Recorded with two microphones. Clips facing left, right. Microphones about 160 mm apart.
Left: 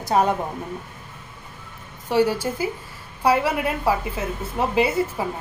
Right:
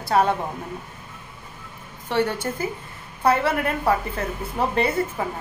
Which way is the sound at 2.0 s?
5° left (ahead or behind).